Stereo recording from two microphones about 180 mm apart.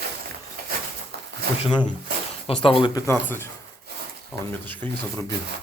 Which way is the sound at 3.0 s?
15° left (ahead or behind).